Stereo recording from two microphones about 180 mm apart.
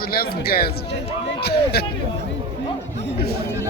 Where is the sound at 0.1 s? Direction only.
55° left (ahead or behind).